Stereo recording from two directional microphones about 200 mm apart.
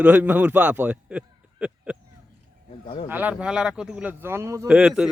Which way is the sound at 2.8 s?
30° left (ahead or behind).